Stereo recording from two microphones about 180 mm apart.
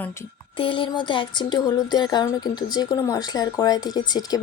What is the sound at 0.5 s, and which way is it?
A woman's voice, 30° left (ahead or behind).